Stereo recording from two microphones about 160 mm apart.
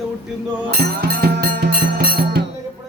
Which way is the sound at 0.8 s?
75° right (ahead or behind).